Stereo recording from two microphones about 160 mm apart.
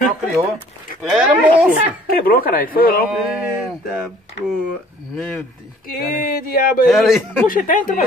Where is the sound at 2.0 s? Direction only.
70° left (ahead or behind).